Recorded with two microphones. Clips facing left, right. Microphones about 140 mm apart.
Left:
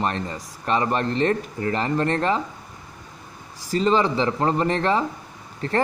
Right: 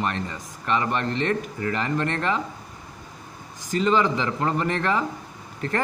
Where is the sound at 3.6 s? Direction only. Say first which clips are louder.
Left 1 dB; 30° left (ahead or behind).